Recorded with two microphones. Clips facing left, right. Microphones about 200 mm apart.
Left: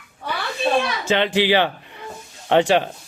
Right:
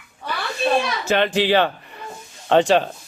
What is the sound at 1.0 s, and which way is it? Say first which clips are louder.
Speech: even; 20° left (ahead or behind).